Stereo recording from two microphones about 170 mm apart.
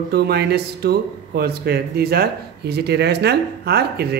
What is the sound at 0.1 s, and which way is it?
Speech, 70° right (ahead or behind).